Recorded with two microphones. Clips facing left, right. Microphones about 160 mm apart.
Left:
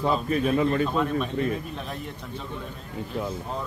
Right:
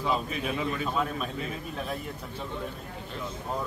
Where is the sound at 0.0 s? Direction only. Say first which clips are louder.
Left 6 dB; 50° left (ahead or behind).